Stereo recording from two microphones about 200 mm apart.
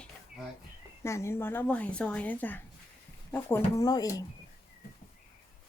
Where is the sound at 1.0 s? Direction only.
15° left (ahead or behind).